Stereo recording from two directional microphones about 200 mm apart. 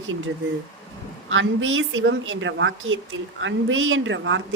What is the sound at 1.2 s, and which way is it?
Speech, 75° right (ahead or behind).